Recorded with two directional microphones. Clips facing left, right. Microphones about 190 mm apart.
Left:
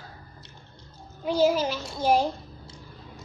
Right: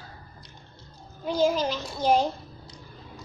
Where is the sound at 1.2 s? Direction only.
10° left (ahead or behind).